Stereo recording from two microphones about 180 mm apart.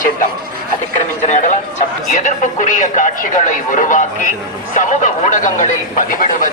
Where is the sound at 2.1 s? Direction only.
45° left (ahead or behind).